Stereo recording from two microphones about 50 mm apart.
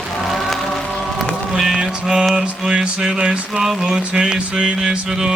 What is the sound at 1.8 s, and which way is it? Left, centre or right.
Mantra, centre.